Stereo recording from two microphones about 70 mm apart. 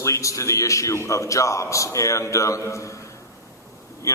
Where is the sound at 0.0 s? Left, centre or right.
Left.